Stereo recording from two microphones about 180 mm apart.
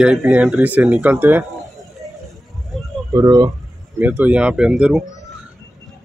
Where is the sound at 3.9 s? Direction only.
10° right (ahead or behind).